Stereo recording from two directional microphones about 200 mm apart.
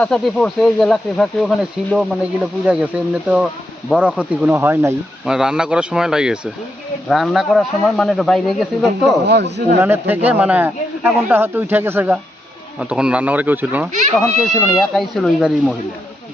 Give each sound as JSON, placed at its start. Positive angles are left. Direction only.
{"t": 0.0, "sound": "speech", "side_deg": 5}
{"t": 9.2, "sound": "speech", "side_deg": -55}
{"t": 9.8, "sound": "speech", "side_deg": -10}